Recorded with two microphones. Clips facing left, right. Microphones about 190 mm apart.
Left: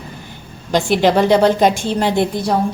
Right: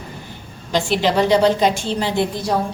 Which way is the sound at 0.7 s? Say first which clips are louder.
Left 4 dB; 50° left (ahead or behind).